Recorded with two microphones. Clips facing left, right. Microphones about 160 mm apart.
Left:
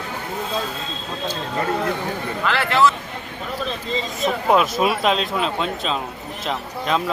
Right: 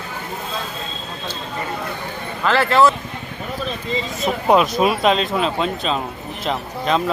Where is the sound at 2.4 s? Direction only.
40° right (ahead or behind).